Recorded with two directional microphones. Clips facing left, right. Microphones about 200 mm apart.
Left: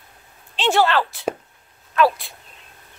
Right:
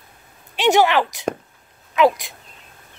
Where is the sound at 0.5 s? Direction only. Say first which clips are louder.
Right 3 dB; 15° right (ahead or behind).